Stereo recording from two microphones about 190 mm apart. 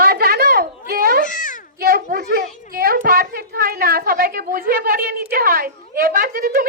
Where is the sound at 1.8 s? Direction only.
50° right (ahead or behind).